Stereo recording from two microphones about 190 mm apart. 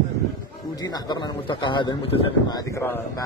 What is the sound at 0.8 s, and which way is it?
Speech, 20° left (ahead or behind).